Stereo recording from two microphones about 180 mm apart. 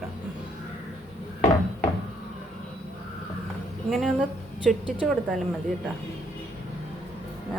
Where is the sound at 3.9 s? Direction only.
Centre (ahead or behind).